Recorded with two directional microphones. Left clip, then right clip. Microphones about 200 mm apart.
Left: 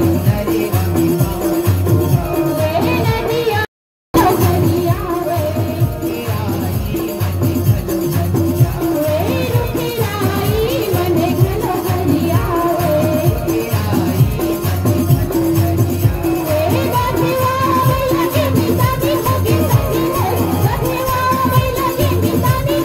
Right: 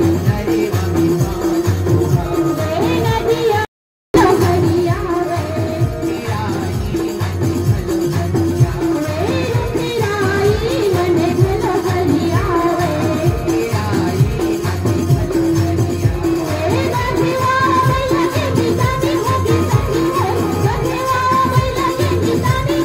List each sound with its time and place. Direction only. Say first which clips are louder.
4.1 s music: right 1 dB; 30° left (ahead or behind)